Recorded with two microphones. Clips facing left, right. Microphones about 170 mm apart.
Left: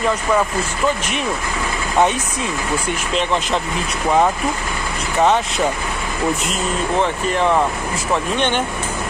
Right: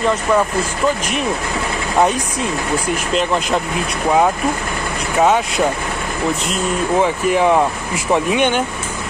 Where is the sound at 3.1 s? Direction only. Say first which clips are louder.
Right 2 dB; 5° right (ahead or behind).